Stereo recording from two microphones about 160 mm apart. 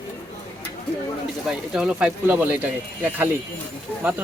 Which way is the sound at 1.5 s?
5° right (ahead or behind).